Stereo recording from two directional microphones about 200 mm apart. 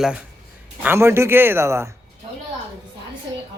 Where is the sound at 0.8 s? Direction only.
10° right (ahead or behind).